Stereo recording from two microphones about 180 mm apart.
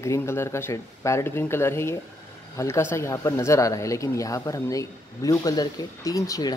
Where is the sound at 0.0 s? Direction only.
15° left (ahead or behind).